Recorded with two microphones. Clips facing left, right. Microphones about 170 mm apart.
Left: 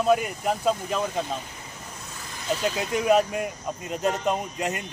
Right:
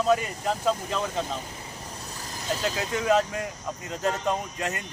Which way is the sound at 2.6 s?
15° left (ahead or behind).